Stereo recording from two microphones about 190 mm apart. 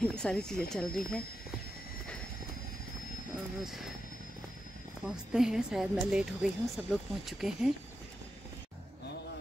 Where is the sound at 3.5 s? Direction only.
Centre (ahead or behind).